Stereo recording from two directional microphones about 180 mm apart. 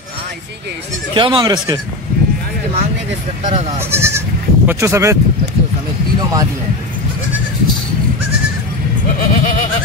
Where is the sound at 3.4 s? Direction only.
40° right (ahead or behind).